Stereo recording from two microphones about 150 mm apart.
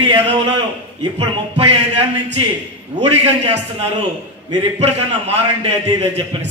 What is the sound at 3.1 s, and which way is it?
A man's voice, 45° right (ahead or behind).